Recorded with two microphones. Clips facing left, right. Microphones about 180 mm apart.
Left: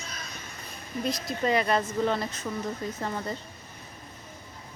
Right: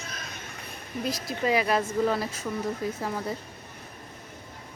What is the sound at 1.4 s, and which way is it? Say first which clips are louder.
Speech: right 1 dB; 5° right (ahead or behind).